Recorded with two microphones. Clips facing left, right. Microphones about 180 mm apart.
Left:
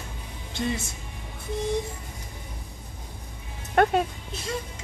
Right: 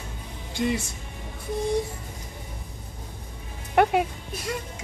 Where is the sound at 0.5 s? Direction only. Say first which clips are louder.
Right 3 dB; 10° right (ahead or behind).